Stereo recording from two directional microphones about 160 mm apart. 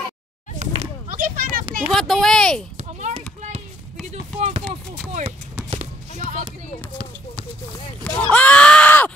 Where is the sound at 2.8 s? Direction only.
45° right (ahead or behind).